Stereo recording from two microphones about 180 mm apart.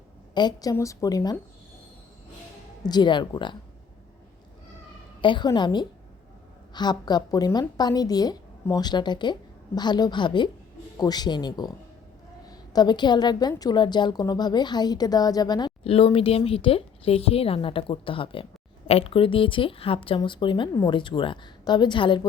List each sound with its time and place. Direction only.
0.3 s a woman's voice: 20° left (ahead or behind)
2.8 s a woman's voice: 25° left (ahead or behind)
5.2 s a woman's voice: 25° left (ahead or behind)